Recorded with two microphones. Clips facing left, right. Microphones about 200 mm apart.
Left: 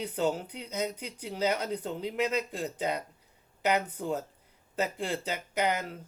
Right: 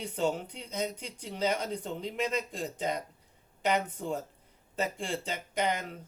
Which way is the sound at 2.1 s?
65° left (ahead or behind).